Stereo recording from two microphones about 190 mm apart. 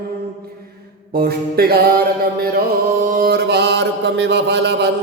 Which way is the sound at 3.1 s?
55° right (ahead or behind).